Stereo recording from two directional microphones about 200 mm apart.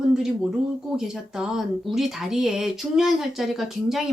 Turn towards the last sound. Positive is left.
turn(degrees=0)  # may be behind; listen again after turning